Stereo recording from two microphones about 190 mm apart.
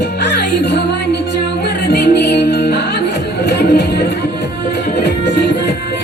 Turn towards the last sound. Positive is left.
turn(degrees=65)  # may be behind; listen again after turning